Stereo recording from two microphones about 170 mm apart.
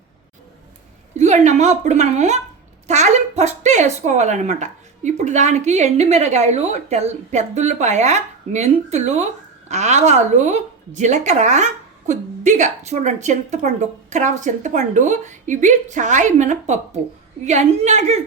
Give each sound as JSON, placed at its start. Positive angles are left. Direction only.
{"t": 1.1, "sound": "a woman's voice", "side_deg": -40}